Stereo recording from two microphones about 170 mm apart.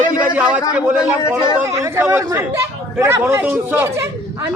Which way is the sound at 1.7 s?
15° right (ahead or behind).